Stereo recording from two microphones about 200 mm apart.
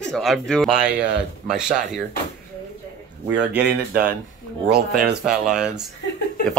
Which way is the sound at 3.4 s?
50° right (ahead or behind).